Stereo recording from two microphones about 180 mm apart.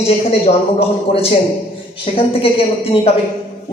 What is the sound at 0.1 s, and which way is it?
Speech, 35° left (ahead or behind).